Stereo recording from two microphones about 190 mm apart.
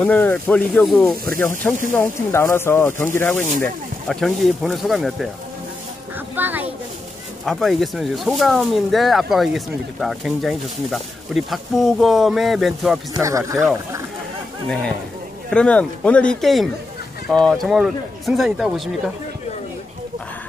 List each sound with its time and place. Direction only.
0.0 s speech: 10° left (ahead or behind)
6.3 s a sound: 10° right (ahead or behind)
7.4 s speech: centre (ahead or behind)
13.1 s speech: 15° right (ahead or behind)
15.5 s speech: 5° left (ahead or behind)